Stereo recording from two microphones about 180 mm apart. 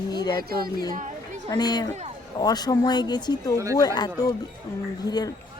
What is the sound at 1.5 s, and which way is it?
Speech, 20° left (ahead or behind).